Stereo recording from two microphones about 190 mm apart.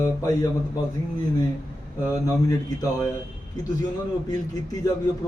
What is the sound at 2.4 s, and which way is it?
Speech, 20° left (ahead or behind).